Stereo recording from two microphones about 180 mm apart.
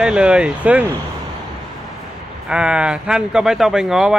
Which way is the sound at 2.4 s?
5° right (ahead or behind).